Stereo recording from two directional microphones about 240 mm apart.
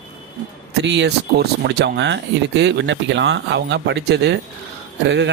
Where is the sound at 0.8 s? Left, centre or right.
Right.